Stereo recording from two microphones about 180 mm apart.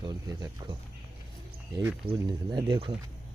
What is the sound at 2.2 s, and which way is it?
Speech, 25° right (ahead or behind).